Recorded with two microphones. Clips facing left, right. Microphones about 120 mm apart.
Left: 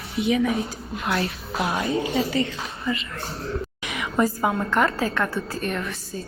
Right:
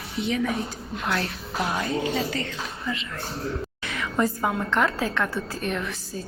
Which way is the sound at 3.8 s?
15° left (ahead or behind).